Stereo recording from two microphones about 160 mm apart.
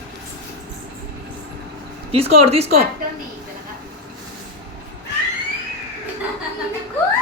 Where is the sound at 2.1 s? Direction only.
40° right (ahead or behind).